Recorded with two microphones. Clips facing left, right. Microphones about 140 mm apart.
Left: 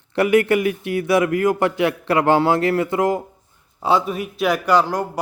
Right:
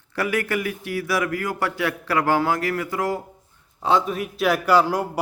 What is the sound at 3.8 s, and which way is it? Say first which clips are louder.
A man's voice: left 2 dB; 5° left (ahead or behind).